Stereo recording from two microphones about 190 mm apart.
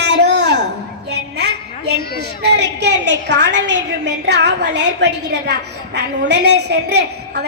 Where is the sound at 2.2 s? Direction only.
60° right (ahead or behind).